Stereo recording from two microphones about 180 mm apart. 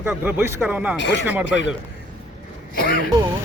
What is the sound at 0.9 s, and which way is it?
Speech, 85° left.